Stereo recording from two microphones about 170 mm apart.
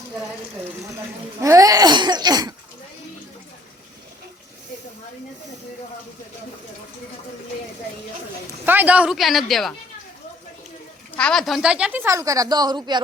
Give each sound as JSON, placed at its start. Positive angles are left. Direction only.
{"t": 1.4, "sound": "cough", "side_deg": -20}
{"t": 8.6, "sound": "speech", "side_deg": -10}
{"t": 11.2, "sound": "a woman's voice", "side_deg": 5}